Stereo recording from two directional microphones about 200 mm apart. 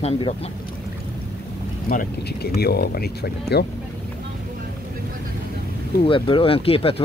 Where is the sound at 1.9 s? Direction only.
50° left (ahead or behind).